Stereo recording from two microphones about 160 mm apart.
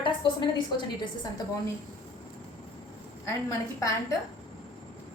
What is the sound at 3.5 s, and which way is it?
Speech, 20° left (ahead or behind).